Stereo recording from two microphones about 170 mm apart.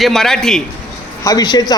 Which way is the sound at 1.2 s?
25° left (ahead or behind).